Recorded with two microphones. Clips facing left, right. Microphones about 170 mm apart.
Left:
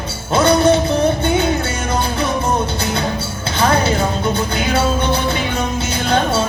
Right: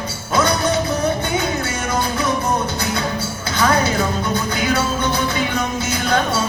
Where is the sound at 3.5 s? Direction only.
30° left (ahead or behind).